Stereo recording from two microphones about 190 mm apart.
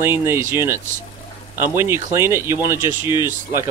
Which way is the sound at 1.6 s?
10° right (ahead or behind).